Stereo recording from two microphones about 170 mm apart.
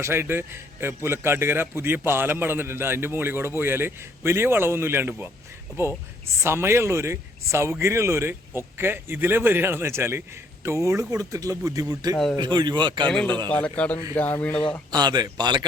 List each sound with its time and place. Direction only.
0.0 s a man's voice: 15° right (ahead or behind)
6.4 s a man's voice: 15° right (ahead or behind)
12.1 s a man's voice: 5° left (ahead or behind)
12.4 s speech: 25° right (ahead or behind)
13.1 s a man's voice: 5° left (ahead or behind)
14.9 s speech: 25° right (ahead or behind)